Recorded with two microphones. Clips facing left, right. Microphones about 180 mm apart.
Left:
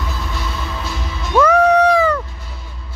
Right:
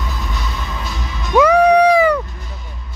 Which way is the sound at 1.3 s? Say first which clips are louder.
Right 2 dB; 15° right (ahead or behind).